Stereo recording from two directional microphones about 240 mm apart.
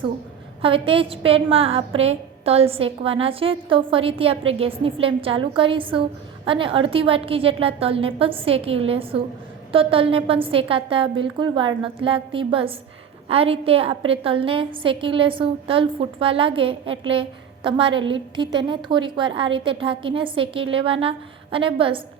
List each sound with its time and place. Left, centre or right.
0.6 s a woman's voice: right